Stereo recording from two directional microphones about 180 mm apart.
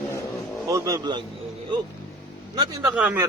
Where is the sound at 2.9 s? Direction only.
10° right (ahead or behind).